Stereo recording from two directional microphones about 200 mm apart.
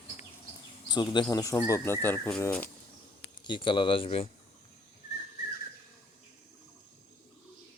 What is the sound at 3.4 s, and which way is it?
Speech, 25° left (ahead or behind).